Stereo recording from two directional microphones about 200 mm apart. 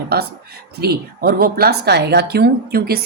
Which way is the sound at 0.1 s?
50° right (ahead or behind).